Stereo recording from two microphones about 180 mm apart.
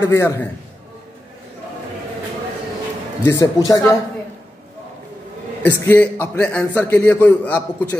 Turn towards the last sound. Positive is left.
turn(degrees=10)  # may be behind; listen again after turning